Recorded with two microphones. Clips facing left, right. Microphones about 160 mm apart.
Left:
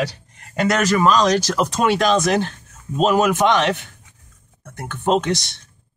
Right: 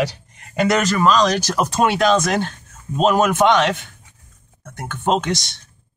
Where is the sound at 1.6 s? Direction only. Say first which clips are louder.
Even; 10° right (ahead or behind).